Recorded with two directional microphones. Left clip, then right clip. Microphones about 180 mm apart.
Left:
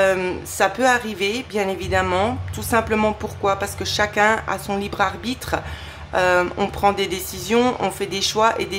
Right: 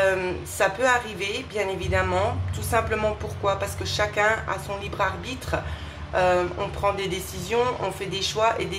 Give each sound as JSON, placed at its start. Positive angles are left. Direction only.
{"t": 0.0, "sound": "a woman's voice", "side_deg": 35}